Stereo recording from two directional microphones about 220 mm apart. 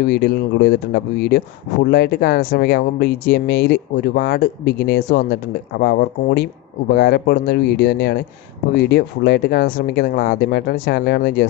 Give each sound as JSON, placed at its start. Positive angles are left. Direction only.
{"t": 0.1, "sound": "speech", "side_deg": 45}